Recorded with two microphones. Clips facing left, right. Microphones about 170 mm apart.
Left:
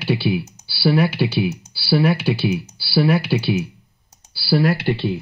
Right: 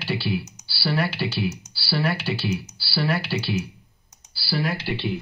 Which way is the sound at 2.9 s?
55° left (ahead or behind).